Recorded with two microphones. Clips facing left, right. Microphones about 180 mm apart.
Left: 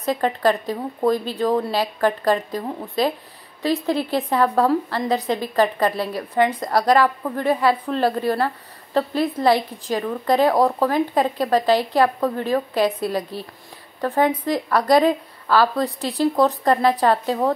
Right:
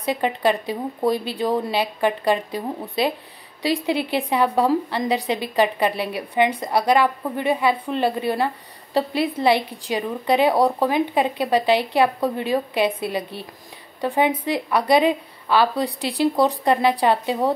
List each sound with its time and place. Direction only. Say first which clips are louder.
0.0 s a woman's voice: left 1 dB; 5° right (ahead or behind)
4.2 s a woman's voice: left 1 dB; 10° right (ahead or behind)
16.4 s a woman's voice: left 1 dB; 15° right (ahead or behind)
17.0 s a woman's voice: left 1 dB; 5° right (ahead or behind)